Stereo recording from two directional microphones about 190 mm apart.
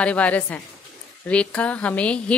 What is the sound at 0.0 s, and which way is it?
A woman's voice, 5° left (ahead or behind).